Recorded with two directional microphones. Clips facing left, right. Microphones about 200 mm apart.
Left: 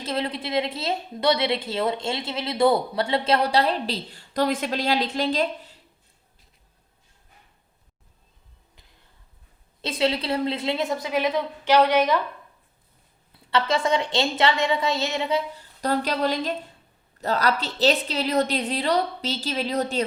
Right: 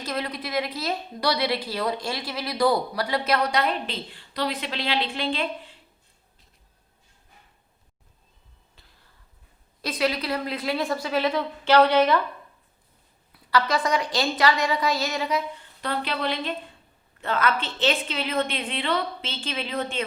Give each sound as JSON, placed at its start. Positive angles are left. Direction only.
{"t": 0.0, "sound": "a woman's voice", "side_deg": 30}
{"t": 9.8, "sound": "a woman's voice", "side_deg": 25}
{"t": 13.3, "sound": "a woman's voice", "side_deg": 25}